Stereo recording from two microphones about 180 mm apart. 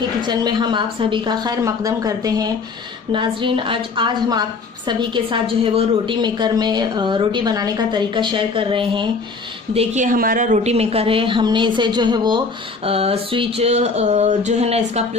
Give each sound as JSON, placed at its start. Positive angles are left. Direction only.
{"t": 0.2, "sound": "a woman's voice", "side_deg": -25}
{"t": 10.1, "sound": "a woman's voice", "side_deg": -50}
{"t": 12.8, "sound": "a sound", "side_deg": -35}